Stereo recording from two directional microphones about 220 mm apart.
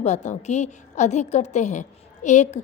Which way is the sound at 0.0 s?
30° left (ahead or behind).